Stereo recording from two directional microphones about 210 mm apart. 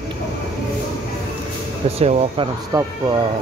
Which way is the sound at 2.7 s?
15° right (ahead or behind).